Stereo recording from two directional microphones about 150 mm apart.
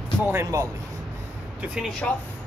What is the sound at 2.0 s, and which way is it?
Speech, 5° left (ahead or behind).